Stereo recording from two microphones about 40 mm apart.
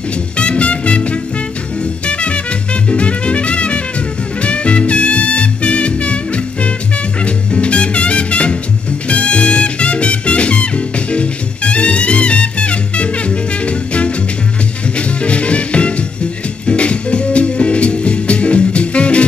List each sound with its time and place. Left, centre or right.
0.4 s music: left